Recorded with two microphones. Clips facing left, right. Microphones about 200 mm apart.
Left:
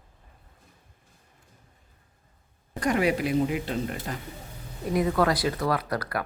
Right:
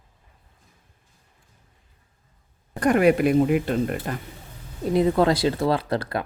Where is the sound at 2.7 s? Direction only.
55° right (ahead or behind).